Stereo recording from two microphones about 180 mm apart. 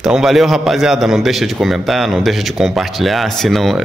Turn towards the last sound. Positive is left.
turn(degrees=0)  # may be behind; listen again after turning